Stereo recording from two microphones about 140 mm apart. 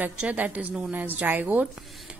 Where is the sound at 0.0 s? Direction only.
10° right (ahead or behind).